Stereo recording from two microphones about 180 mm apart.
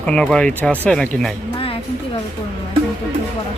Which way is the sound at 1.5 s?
30° left (ahead or behind).